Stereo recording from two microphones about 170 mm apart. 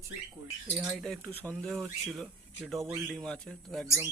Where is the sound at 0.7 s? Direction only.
Centre (ahead or behind).